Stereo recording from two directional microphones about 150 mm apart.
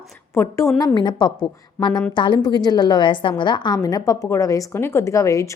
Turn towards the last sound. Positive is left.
turn(degrees=20)  # may be behind; listen again after turning